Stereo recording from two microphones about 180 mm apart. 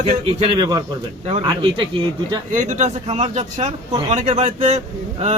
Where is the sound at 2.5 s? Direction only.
45° right (ahead or behind).